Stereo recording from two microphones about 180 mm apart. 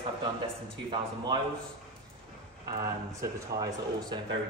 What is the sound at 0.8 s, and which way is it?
Speech, 25° right (ahead or behind).